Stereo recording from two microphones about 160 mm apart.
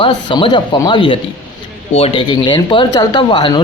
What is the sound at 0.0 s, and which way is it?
Speech, 30° left (ahead or behind).